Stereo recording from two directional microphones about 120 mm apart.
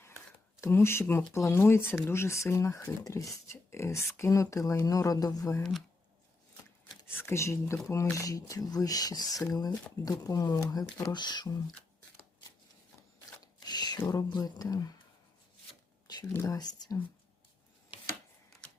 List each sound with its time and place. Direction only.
0.6 s speech: 20° left (ahead or behind)
7.1 s speech: 20° left (ahead or behind); by 11.4 s 40° left (ahead or behind)
13.4 s a sound: 35° left (ahead or behind)
14.1 s speech: 35° left (ahead or behind)
16.3 s speech: 20° left (ahead or behind)
16.6 s speech: 35° left (ahead or behind)